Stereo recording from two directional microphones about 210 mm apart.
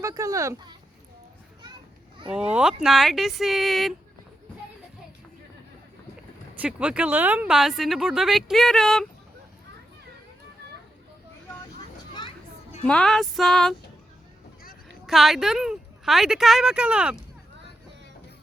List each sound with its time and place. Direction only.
0.0 s speech: 15° right (ahead or behind)
2.3 s speech: 5° right (ahead or behind)
6.6 s speech: 5° right (ahead or behind)
12.8 s speech: 5° left (ahead or behind)
15.0 s speech: centre (ahead or behind)